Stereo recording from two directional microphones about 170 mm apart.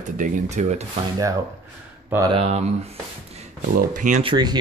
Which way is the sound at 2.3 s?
40° right (ahead or behind).